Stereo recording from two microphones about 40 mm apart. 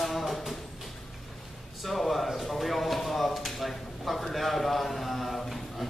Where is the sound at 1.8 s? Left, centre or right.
Centre.